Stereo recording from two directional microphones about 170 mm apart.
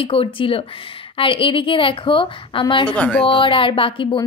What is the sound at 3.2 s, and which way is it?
Speech, 30° left (ahead or behind).